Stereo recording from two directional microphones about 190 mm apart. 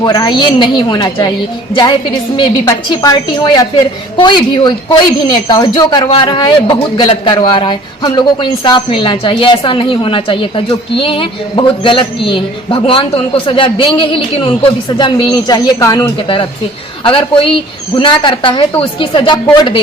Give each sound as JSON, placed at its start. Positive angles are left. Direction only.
{"t": 0.0, "sound": "speech", "side_deg": 20}